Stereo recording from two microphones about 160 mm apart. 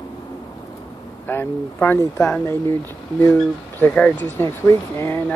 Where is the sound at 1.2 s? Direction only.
10° left (ahead or behind).